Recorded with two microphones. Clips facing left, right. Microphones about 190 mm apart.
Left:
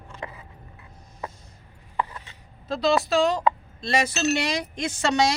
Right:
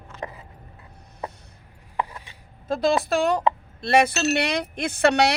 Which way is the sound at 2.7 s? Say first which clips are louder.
Right 1 dB; 50° right (ahead or behind).